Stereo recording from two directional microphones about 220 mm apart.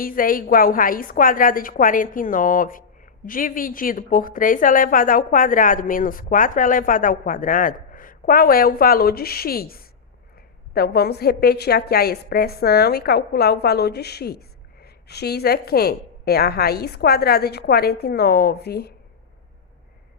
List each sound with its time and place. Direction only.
0.0 s a woman's voice: 40° left (ahead or behind)